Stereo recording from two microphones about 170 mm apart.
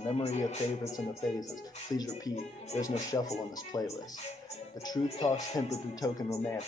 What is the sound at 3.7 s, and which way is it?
Speech, 20° left (ahead or behind).